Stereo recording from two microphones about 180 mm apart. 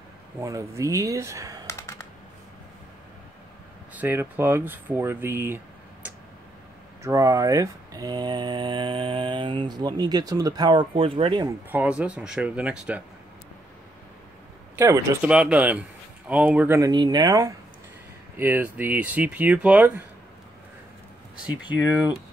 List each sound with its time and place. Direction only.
0.4 s speech: 15° right (ahead or behind)
1.7 s computer keyboard: 15° left (ahead or behind)
3.9 s speech: 10° right (ahead or behind)
7.0 s speech: 15° right (ahead or behind)
11.7 s speech: 10° right (ahead or behind)
14.8 s speech: 15° right (ahead or behind)
18.4 s speech: 10° right (ahead or behind)